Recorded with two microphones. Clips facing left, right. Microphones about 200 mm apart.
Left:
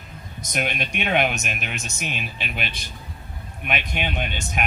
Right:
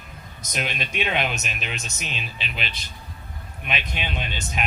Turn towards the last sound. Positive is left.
turn(degrees=55)  # may be behind; listen again after turning